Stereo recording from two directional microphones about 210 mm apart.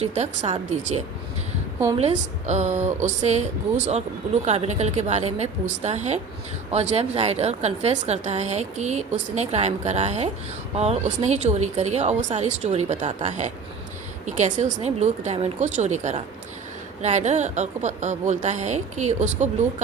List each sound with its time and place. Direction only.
0.0 s a woman's voice: 30° right (ahead or behind)